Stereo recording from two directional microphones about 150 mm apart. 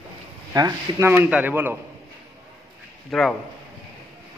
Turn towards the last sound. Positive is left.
turn(degrees=0)  # may be behind; listen again after turning